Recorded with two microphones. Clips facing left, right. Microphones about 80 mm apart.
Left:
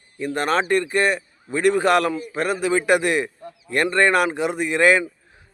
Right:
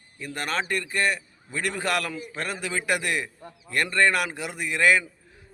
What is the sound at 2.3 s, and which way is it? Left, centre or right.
A man's voice, centre.